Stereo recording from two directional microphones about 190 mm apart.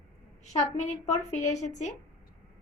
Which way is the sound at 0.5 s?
35° left (ahead or behind).